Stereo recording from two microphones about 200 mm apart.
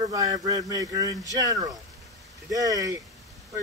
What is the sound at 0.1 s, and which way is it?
Speech, 15° right (ahead or behind).